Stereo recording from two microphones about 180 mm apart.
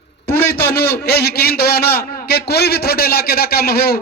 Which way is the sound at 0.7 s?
60° left (ahead or behind).